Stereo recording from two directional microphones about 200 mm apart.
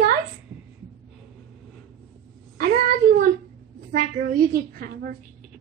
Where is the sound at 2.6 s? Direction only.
45° right (ahead or behind).